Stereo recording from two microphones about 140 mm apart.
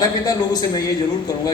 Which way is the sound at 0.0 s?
25° left (ahead or behind).